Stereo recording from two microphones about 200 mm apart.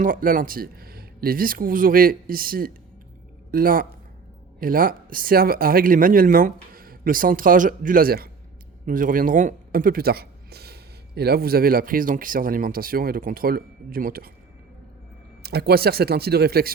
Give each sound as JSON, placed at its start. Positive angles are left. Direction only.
{"t": 0.0, "sound": "speech", "side_deg": -45}
{"t": 15.4, "sound": "speech", "side_deg": -55}